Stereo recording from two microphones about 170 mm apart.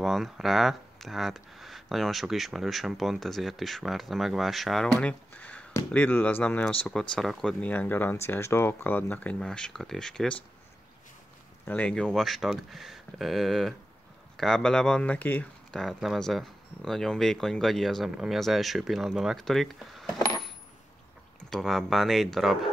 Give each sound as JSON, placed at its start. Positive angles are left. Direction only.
{"t": 0.0, "sound": "speech", "side_deg": 0}
{"t": 11.6, "sound": "speech", "side_deg": 10}
{"t": 20.2, "sound": "coin", "side_deg": 20}
{"t": 21.5, "sound": "speech", "side_deg": 0}